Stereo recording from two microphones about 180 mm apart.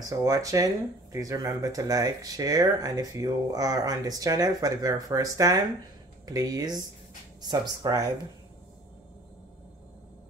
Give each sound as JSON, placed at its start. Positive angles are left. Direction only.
{"t": 0.2, "sound": "speech", "side_deg": -20}
{"t": 7.8, "sound": "speech", "side_deg": -20}